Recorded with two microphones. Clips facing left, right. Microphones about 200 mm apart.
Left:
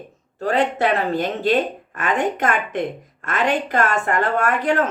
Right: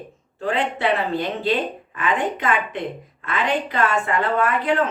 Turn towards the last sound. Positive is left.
turn(degrees=45)  # may be behind; listen again after turning